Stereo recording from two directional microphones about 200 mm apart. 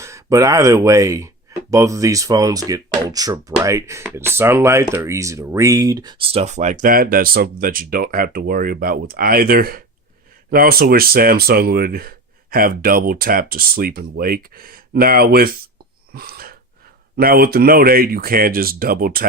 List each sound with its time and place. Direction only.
0.0 s speech: 15° right (ahead or behind); by 15.7 s 50° right (ahead or behind)
16.1 s a sound: 50° right (ahead or behind)
17.2 s speech: 50° right (ahead or behind)